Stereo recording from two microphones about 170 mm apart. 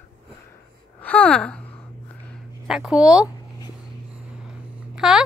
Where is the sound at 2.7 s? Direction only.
5° right (ahead or behind).